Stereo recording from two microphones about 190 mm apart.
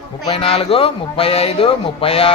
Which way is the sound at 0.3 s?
30° left (ahead or behind).